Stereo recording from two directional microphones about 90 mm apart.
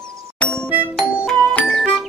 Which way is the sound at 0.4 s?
10° left (ahead or behind).